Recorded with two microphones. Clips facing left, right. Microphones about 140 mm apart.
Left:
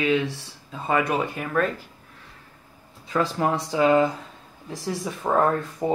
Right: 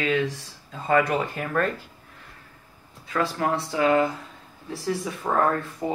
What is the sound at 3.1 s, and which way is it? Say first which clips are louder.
Speech: left 2 dB; 15° left (ahead or behind).